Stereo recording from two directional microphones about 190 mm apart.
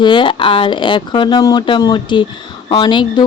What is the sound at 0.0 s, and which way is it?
Speech, 25° left (ahead or behind).